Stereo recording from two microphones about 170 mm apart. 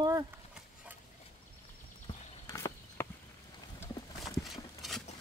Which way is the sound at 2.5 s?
20° left (ahead or behind).